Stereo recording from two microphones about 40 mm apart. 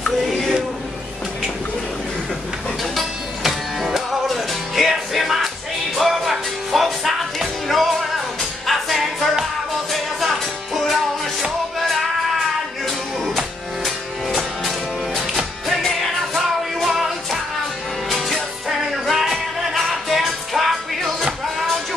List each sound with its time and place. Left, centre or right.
3.4 s music: centre
13.8 s music: centre